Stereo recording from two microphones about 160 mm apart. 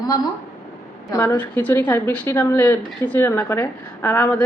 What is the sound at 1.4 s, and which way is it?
A woman's voice, 10° left (ahead or behind).